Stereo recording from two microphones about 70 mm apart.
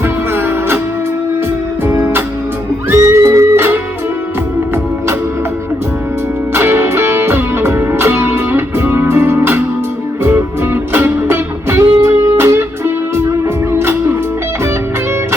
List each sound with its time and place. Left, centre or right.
0.0 s music: right
1.8 s music: right
3.5 s music: right
6.5 s music: right